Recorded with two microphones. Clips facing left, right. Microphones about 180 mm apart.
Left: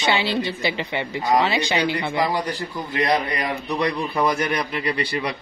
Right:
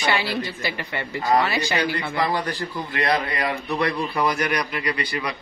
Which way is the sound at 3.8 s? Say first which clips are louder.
Left 1 dB; 20° left (ahead or behind).